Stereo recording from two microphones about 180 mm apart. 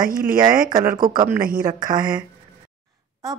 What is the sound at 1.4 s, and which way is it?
Speech, 50° right (ahead or behind).